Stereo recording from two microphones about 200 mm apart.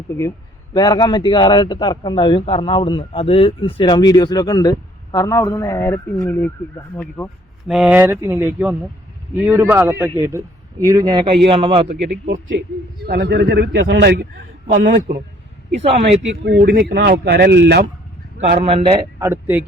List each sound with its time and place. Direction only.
0.1 s a man's voice: 15° left (ahead or behind)
7.7 s speech: 5° right (ahead or behind); by 11.9 s 30° right (ahead or behind)
12.3 s a man's voice: 60° right (ahead or behind)
15.7 s a man's voice: 30° right (ahead or behind)
16.3 s a man's voice: 60° right (ahead or behind)
18.6 s speech: 30° right (ahead or behind)
19.2 s speech: 10° right (ahead or behind)